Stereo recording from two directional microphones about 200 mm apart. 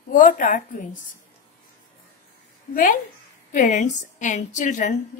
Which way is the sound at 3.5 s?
40° left (ahead or behind).